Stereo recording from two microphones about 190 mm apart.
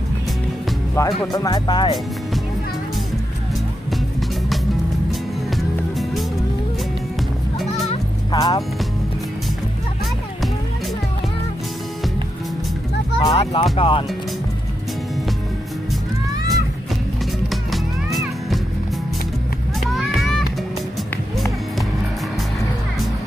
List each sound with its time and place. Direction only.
0.9 s speech: 20° left (ahead or behind)
7.7 s music: 30° left (ahead or behind)
13.2 s speech: 30° left (ahead or behind)
17.5 s music: centre (ahead or behind)
19.8 s a sound: centre (ahead or behind)